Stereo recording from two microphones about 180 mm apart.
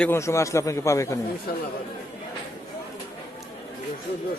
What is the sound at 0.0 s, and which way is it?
A man's voice, 15° left (ahead or behind).